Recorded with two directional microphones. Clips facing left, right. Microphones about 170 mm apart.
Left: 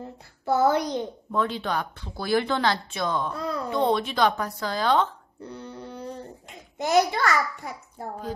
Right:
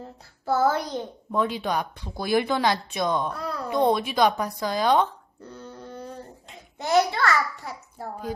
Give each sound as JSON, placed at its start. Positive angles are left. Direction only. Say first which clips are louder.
{"t": 0.5, "sound": "a child's voice", "louder": "left 1 dB", "side_deg": 15}
{"t": 1.3, "sound": "speech", "louder": "right 2 dB", "side_deg": -10}
{"t": 6.8, "sound": "a child's voice", "louder": "even", "side_deg": 15}